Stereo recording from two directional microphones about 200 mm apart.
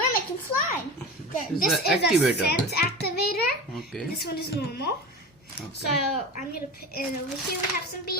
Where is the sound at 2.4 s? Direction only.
50° left (ahead or behind).